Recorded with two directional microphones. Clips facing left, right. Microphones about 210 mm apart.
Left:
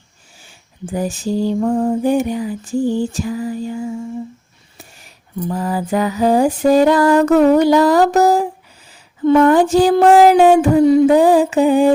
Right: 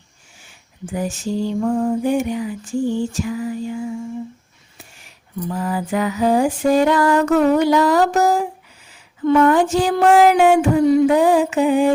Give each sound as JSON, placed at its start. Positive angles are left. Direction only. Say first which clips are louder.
{"t": 0.4, "sound": "lullaby", "louder": "left 3 dB", "side_deg": 35}
{"t": 5.5, "sound": "lullaby", "louder": "left 3 dB", "side_deg": 35}